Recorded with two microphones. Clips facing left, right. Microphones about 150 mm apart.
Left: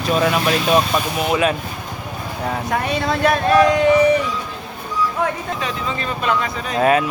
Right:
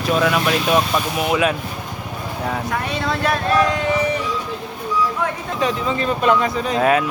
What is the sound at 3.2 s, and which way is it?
Speech, 15° left (ahead or behind).